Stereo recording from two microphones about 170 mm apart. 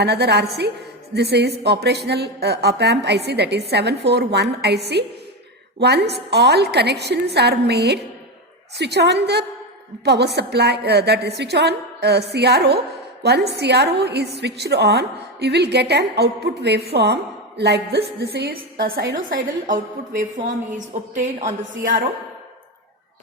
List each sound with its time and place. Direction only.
0.0 s a woman's voice: 75° right (ahead or behind)
20.1 s a woman's voice: 45° right (ahead or behind)